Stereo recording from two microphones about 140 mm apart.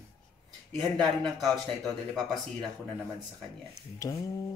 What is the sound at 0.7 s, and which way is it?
Speech, centre (ahead or behind).